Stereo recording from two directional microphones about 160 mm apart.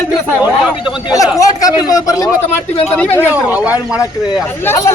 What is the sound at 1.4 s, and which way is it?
A man's voice, 20° left (ahead or behind).